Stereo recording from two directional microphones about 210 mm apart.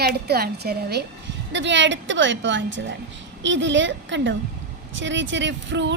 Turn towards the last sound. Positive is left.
turn(degrees=-60)  # may be behind; listen again after turning